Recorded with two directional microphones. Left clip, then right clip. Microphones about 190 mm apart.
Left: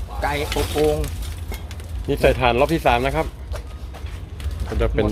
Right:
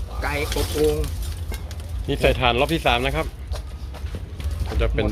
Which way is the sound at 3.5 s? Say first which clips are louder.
Left 2 dB; 5° left (ahead or behind).